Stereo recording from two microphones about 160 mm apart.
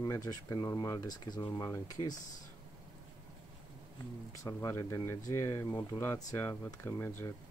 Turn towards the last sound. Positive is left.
turn(degrees=15)  # may be behind; listen again after turning